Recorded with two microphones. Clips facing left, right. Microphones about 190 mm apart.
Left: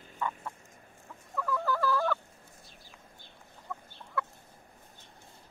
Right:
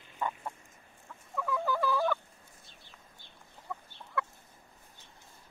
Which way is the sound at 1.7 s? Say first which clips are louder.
Left 1 dB; 20° right (ahead or behind).